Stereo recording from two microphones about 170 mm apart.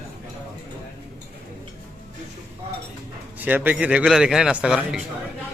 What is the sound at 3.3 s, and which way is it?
A man's voice, 10° right (ahead or behind).